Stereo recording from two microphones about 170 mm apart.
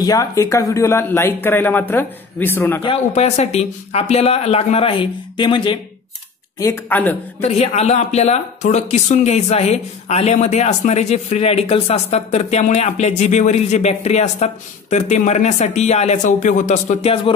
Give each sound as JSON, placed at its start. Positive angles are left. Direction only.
{"t": 0.0, "sound": "speech", "side_deg": 20}
{"t": 2.8, "sound": "speech", "side_deg": 35}
{"t": 6.6, "sound": "speech", "side_deg": 15}
{"t": 7.4, "sound": "speech", "side_deg": 40}